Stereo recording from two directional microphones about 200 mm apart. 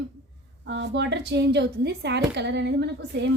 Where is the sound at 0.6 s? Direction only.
60° right (ahead or behind).